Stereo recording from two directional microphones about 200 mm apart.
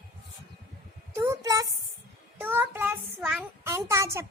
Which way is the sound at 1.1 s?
10° right (ahead or behind).